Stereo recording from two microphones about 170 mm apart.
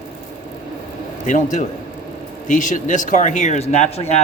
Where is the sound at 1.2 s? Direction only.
50° left (ahead or behind).